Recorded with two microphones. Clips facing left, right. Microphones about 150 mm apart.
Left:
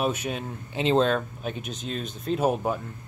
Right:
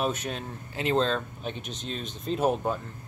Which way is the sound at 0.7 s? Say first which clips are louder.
Left 4 dB; 20° left (ahead or behind).